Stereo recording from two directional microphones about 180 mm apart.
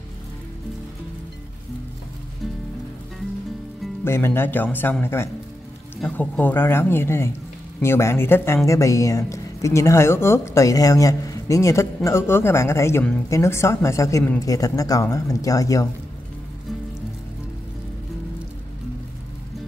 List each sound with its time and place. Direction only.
4.0 s speech: 15° left (ahead or behind)